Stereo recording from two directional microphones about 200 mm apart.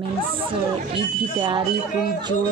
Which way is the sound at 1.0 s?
25° right (ahead or behind).